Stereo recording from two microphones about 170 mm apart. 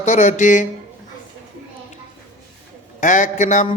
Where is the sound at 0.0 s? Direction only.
45° left (ahead or behind).